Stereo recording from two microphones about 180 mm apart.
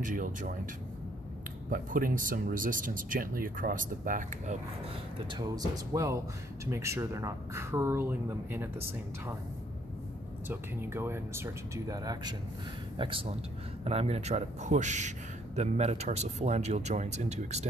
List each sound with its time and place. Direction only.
0.0 s speech: 45° right (ahead or behind)
1.7 s speech: 50° right (ahead or behind)
5.3 s speech: 20° right (ahead or behind)
10.5 s a man's voice: 10° right (ahead or behind); by 17.6 s 40° right (ahead or behind)